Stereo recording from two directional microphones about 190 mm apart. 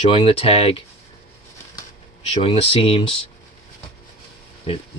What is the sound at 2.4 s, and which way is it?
Speech, 30° left (ahead or behind).